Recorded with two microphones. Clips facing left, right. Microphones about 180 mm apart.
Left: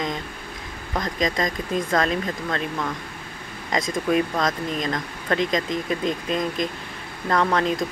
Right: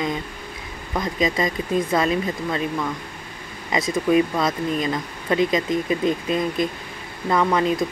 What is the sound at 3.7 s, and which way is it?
Speech, 5° right (ahead or behind).